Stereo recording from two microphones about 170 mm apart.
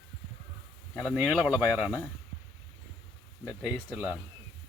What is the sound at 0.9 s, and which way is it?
Speech, centre (ahead or behind).